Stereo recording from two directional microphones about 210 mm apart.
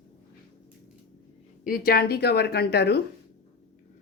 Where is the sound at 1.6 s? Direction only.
45° left (ahead or behind).